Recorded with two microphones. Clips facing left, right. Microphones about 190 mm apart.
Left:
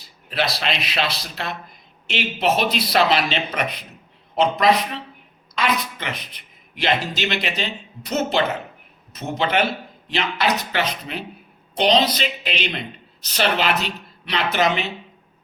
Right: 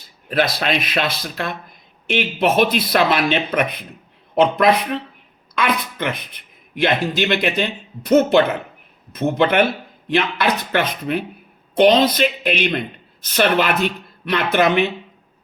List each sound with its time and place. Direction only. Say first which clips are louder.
0.0 s speech: right 5 dB; 50° right (ahead or behind)